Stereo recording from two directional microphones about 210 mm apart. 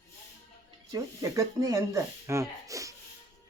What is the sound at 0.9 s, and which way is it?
Speech, 15° right (ahead or behind).